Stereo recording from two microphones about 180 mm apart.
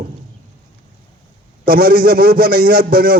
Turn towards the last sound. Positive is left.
turn(degrees=-55)  # may be behind; listen again after turning